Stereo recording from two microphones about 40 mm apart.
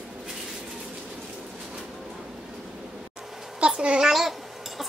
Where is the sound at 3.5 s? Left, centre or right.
Right.